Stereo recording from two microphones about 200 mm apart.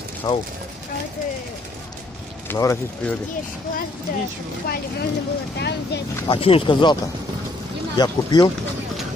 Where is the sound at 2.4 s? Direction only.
15° left (ahead or behind).